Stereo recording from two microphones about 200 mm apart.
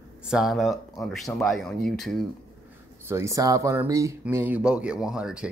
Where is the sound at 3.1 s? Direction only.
15° right (ahead or behind).